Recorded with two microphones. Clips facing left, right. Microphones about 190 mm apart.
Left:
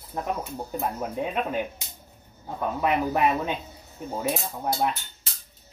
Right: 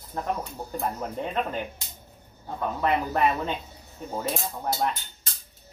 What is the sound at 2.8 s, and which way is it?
Speech, 15° left (ahead or behind).